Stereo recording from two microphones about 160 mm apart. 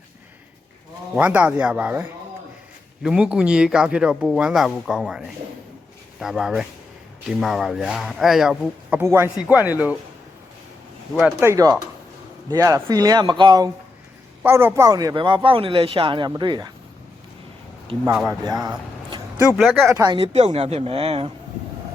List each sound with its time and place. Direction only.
1.1 s speech: 10° right (ahead or behind)
9.0 s speech: 15° right (ahead or behind)
11.1 s speech: centre (ahead or behind)
11.3 s a man's voice: 20° right (ahead or behind)
14.4 s a man's voice: 15° right (ahead or behind)
18.3 s speech: 25° right (ahead or behind)
19.5 s speech: centre (ahead or behind)
19.9 s a man's voice: 25° right (ahead or behind)
20.1 s speech: 40° right (ahead or behind)